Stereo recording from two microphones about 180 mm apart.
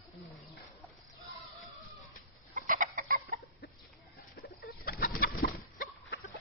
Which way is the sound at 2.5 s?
45° right (ahead or behind).